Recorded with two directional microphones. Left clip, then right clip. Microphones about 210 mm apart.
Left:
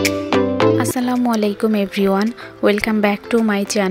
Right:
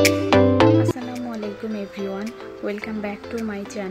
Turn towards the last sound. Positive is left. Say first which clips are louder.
# left 11 dB
turn(degrees=50)  # may be behind; listen again after turning